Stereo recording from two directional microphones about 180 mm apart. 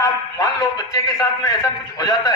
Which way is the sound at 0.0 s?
20° left (ahead or behind).